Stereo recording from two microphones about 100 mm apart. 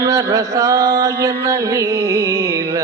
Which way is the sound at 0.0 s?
35° right (ahead or behind).